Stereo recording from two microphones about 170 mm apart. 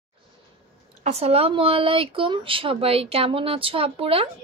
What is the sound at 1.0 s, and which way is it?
Speech, 40° right (ahead or behind).